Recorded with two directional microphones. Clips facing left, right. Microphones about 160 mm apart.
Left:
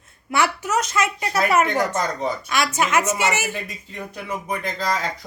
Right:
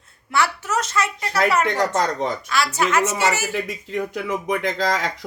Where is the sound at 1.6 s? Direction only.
80° right.